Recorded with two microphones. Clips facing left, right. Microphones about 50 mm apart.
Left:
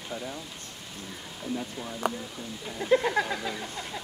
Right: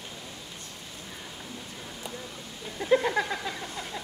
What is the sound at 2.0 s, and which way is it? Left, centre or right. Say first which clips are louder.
Speech: left 11 dB; left.